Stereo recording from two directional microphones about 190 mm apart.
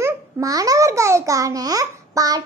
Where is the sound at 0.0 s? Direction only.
20° right (ahead or behind).